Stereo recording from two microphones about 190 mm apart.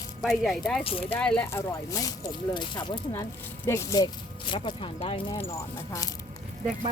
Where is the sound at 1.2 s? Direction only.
5° left (ahead or behind); by 5.4 s 30° left (ahead or behind).